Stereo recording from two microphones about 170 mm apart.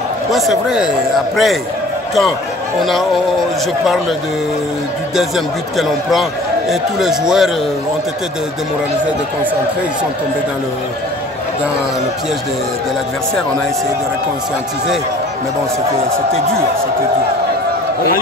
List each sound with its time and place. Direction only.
0.3 s a man's voice: centre (ahead or behind)
2.8 s a man's voice: centre (ahead or behind)
5.8 s a man's voice: centre (ahead or behind)